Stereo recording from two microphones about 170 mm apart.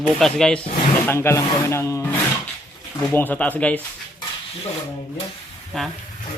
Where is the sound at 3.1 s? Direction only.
10° left (ahead or behind).